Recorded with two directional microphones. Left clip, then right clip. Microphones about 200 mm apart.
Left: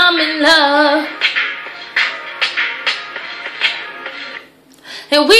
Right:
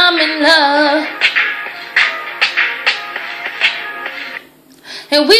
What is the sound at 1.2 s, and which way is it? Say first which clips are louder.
Music: right 3 dB; 30° right (ahead or behind).